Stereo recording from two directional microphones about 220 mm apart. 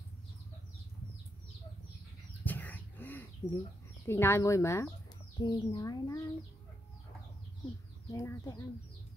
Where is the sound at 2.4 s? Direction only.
10° left (ahead or behind).